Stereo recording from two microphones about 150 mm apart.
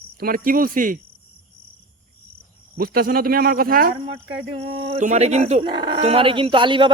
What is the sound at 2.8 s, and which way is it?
Speech, 80° right.